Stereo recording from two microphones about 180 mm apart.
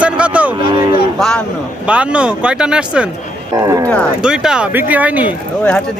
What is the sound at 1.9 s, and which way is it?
Speech, 5° right (ahead or behind).